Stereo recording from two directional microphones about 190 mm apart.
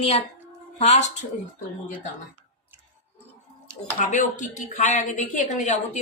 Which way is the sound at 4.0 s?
45° left (ahead or behind).